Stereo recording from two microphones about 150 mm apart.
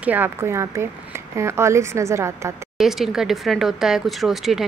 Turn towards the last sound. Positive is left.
turn(degrees=0)  # may be behind; listen again after turning